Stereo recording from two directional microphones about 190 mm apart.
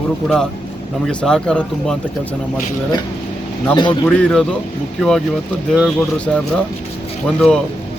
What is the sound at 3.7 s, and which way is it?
Speech, 25° left (ahead or behind).